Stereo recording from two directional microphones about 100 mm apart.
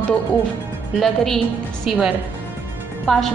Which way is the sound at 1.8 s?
5° right (ahead or behind).